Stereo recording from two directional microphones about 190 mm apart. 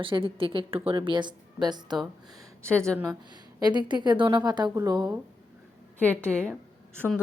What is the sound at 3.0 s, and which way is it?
Speech, 20° right (ahead or behind).